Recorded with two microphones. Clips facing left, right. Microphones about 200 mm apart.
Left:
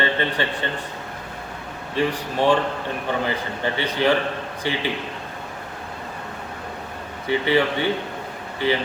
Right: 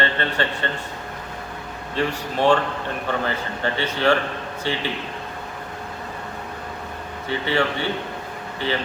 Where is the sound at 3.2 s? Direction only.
15° left (ahead or behind).